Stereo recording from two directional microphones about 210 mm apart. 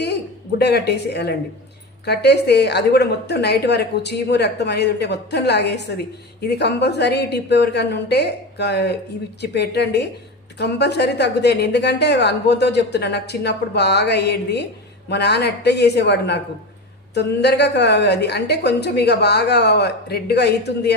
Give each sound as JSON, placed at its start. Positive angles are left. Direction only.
{"t": 0.6, "sound": "a woman's voice", "side_deg": 50}